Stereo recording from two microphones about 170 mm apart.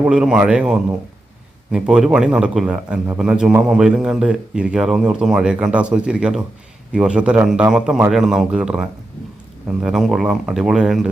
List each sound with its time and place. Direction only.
0.0 s a man's voice: 5° right (ahead or behind)